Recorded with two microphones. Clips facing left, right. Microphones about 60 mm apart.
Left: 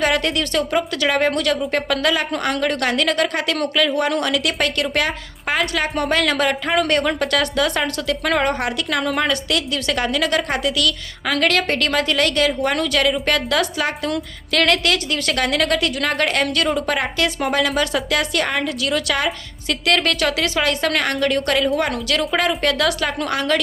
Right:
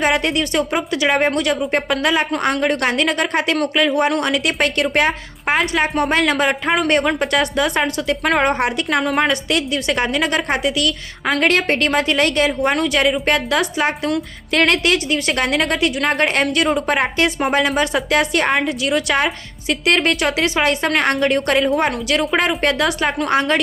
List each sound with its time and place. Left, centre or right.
0.0 s a woman's voice: right
8.4 s a woman's voice: right